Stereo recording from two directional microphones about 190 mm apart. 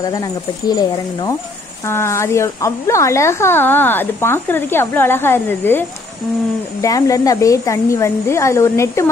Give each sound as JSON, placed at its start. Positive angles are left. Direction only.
{"t": 0.0, "sound": "speech", "side_deg": 20}